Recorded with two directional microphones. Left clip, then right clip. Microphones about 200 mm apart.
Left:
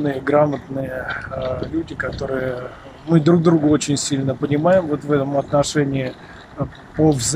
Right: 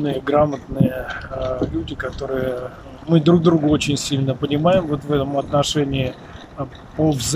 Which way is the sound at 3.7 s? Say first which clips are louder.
Left 1 dB; 25° right (ahead or behind).